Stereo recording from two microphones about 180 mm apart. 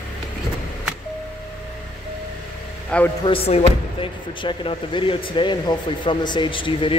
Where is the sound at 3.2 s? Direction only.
30° left (ahead or behind).